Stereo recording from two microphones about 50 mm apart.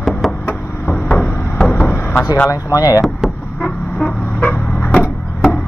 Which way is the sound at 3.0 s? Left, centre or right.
Centre.